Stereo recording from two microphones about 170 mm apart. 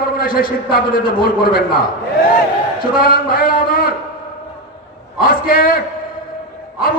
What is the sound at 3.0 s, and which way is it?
Speech, 60° left (ahead or behind).